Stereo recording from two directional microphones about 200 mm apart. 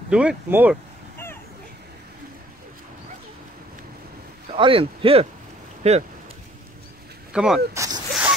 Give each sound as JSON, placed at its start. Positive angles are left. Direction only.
{"t": 0.1, "sound": "speech", "side_deg": -5}
{"t": 4.5, "sound": "speech", "side_deg": -25}
{"t": 7.3, "sound": "speech", "side_deg": -5}
{"t": 7.7, "sound": "zipper", "side_deg": -15}